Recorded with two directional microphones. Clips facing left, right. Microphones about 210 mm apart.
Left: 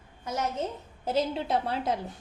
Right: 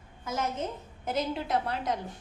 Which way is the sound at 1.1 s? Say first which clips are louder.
Left 2 dB; 30° left (ahead or behind).